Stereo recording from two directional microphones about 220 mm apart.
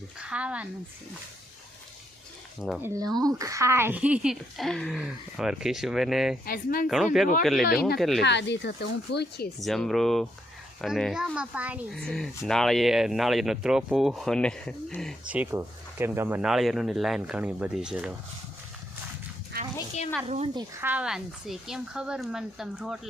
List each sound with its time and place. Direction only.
0.2 s speech: 5° right (ahead or behind)
2.6 s speech: 5° right (ahead or behind)
3.2 s speech: 15° right (ahead or behind)
6.4 s speech: 40° left (ahead or behind)
6.8 s speech: centre (ahead or behind)
7.6 s speech: 45° left (ahead or behind)
7.9 s speech: centre (ahead or behind)
8.2 s speech: 50° left (ahead or behind)
9.6 s speech: centre (ahead or behind)
15.3 s speech: 10° right (ahead or behind)
20.2 s speech: 30° right (ahead or behind)
20.8 s speech: 5° right (ahead or behind)